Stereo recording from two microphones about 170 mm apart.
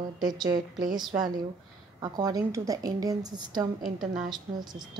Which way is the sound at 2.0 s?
25° right (ahead or behind).